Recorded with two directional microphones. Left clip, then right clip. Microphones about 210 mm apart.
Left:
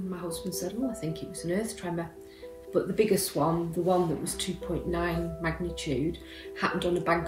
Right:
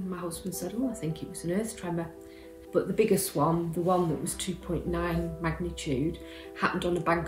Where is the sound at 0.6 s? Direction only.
15° right (ahead or behind).